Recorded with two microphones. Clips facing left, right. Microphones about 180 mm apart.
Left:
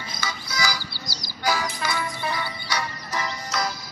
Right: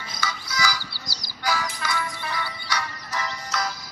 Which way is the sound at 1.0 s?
10° right (ahead or behind).